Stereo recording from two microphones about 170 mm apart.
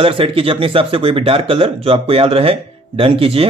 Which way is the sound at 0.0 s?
30° right (ahead or behind).